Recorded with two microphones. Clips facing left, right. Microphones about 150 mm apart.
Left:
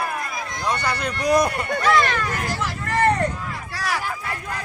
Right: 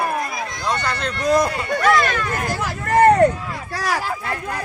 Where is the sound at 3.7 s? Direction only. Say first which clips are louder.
Right 4 dB; 45° right (ahead or behind).